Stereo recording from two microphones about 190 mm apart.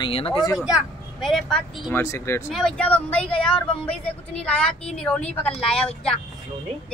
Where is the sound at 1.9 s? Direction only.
15° left (ahead or behind).